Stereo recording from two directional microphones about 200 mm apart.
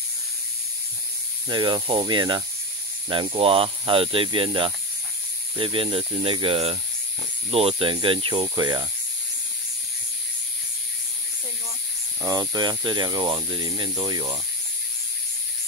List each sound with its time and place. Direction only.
1.5 s speech: 25° right (ahead or behind)
12.2 s speech: 20° right (ahead or behind)